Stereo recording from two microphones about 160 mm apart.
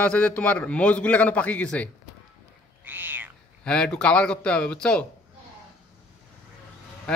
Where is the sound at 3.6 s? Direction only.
5° left (ahead or behind).